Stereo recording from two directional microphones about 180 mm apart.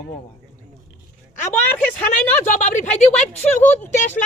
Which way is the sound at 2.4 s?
40° left (ahead or behind).